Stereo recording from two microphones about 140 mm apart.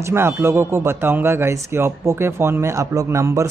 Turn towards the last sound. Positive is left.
turn(degrees=-20)  # may be behind; listen again after turning